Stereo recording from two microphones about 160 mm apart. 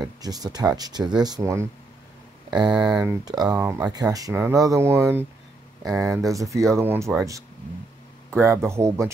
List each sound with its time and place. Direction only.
0.0 s speech: 25° right (ahead or behind)
2.7 s speech: 5° right (ahead or behind)
8.3 s speech: 20° right (ahead or behind)